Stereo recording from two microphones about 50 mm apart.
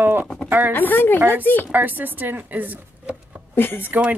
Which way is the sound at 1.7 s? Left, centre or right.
Right.